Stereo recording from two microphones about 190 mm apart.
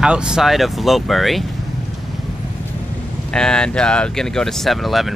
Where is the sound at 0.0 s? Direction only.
5° right (ahead or behind).